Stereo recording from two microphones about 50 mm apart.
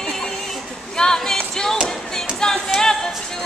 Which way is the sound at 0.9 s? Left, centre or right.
Centre.